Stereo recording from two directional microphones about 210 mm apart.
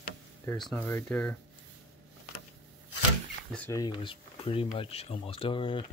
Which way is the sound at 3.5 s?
15° left (ahead or behind).